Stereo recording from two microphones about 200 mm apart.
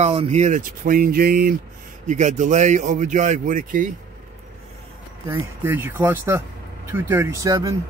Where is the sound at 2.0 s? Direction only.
35° right (ahead or behind).